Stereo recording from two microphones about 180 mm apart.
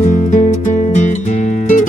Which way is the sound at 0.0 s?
45° left (ahead or behind).